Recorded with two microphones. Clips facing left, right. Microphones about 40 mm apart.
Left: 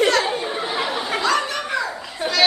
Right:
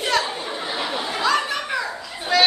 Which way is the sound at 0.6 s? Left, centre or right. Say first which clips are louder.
Left 2 dB; centre.